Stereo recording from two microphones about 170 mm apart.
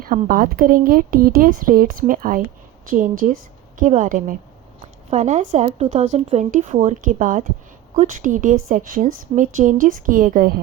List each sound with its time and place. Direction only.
0.3 s a woman's voice: 60° right (ahead or behind)